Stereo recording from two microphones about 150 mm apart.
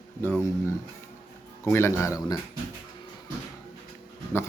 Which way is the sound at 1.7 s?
15° left (ahead or behind).